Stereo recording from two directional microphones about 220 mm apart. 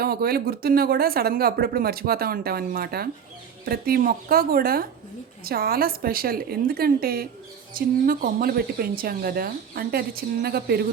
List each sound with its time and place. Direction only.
0.0 s speech: 45° right (ahead or behind)